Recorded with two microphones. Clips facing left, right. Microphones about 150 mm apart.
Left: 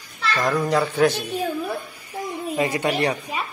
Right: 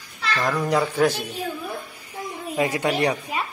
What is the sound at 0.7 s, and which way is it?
Speech, 5° right (ahead or behind).